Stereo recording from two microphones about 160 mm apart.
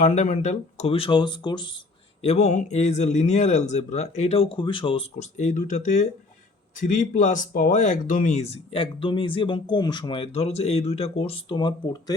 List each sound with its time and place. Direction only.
0.0 s speech: 50° left (ahead or behind); by 1.8 s 30° left (ahead or behind)
2.2 s speech: 45° left (ahead or behind)
5.2 s speech: 50° left (ahead or behind); by 12.1 s 30° left (ahead or behind)